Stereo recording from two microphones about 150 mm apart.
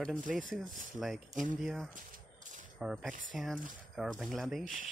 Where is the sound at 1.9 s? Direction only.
60° right (ahead or behind).